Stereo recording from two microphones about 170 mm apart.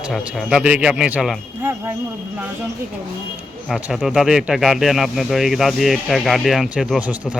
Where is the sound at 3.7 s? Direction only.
5° right (ahead or behind).